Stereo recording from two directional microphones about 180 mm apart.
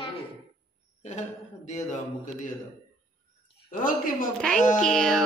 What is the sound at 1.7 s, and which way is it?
Speech, 45° left (ahead or behind).